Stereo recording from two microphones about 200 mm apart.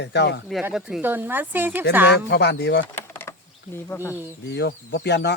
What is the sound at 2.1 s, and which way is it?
Speech, 55° left (ahead or behind).